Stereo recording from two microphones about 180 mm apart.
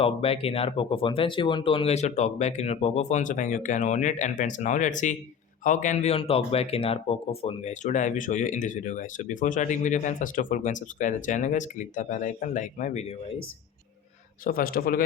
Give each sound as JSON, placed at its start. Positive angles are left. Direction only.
{"t": 0.0, "sound": "speech", "side_deg": 30}
{"t": 14.4, "sound": "speech", "side_deg": 55}